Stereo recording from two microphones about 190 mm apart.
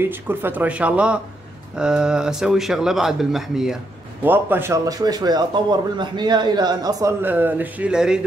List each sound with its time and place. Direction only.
0.0 s speech: 10° right (ahead or behind)